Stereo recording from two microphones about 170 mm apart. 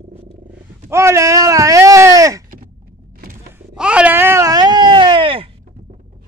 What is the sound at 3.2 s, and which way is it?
Music, 60° right (ahead or behind).